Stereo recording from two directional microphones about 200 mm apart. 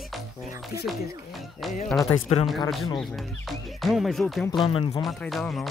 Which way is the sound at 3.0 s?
Centre (ahead or behind).